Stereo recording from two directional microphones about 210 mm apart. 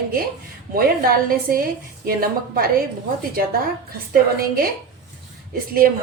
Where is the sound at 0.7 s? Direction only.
45° right (ahead or behind).